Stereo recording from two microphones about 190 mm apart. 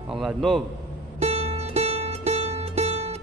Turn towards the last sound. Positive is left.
turn(degrees=-35)  # may be behind; listen again after turning